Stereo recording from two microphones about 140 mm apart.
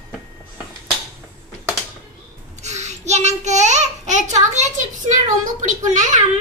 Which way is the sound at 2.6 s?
55° right (ahead or behind).